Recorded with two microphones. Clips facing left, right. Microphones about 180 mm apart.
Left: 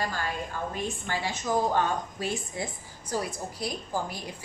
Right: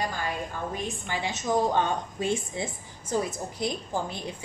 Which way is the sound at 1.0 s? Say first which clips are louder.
Right 2 dB; 20° right (ahead or behind).